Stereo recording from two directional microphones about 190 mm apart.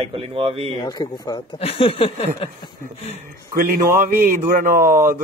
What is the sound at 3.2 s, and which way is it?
Speech, 45° right (ahead or behind).